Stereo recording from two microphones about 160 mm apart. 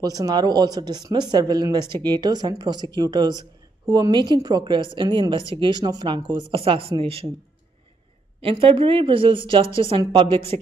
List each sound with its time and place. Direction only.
0.0 s speech: 25° right (ahead or behind)
8.4 s speech: 35° right (ahead or behind)